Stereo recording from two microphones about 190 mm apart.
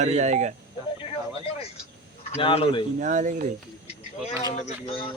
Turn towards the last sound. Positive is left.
turn(degrees=30)  # may be behind; listen again after turning